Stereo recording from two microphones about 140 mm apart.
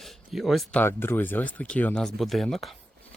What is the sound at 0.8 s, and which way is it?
Speech, 15° left (ahead or behind).